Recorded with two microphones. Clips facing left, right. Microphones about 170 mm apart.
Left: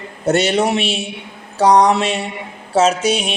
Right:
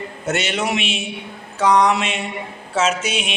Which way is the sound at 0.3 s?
35° left (ahead or behind).